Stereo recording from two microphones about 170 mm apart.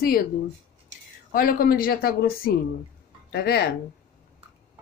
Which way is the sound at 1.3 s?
55° left (ahead or behind).